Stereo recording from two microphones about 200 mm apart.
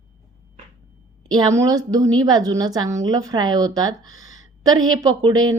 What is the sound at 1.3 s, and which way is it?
A woman's voice, 20° right (ahead or behind).